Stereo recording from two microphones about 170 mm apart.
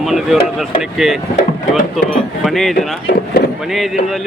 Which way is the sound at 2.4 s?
Centre (ahead or behind).